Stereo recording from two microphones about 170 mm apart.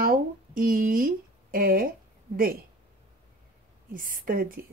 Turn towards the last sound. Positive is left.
turn(degrees=-55)  # may be behind; listen again after turning